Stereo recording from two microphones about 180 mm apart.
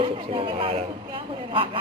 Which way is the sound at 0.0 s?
30° right (ahead or behind).